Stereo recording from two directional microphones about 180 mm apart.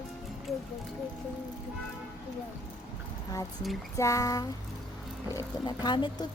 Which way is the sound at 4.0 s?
20° left (ahead or behind).